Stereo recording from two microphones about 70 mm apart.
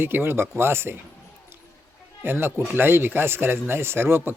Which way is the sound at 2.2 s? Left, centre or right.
Right.